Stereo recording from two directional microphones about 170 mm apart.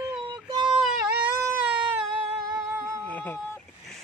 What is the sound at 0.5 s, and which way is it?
Child singing, 25° right (ahead or behind).